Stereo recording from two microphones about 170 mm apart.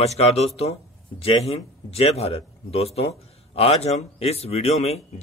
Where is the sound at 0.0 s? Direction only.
40° left (ahead or behind).